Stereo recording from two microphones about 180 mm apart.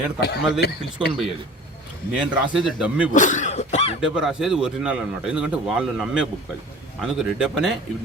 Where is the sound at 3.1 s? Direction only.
45° left (ahead or behind).